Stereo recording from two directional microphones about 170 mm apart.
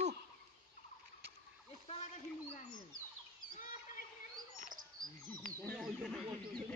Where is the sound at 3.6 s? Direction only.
50° left (ahead or behind).